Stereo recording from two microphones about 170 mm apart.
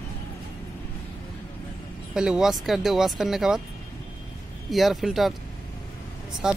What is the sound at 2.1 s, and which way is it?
Speech, 5° right (ahead or behind).